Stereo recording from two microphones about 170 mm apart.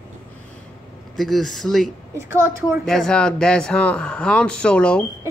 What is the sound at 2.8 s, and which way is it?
A man's voice, 5° left (ahead or behind).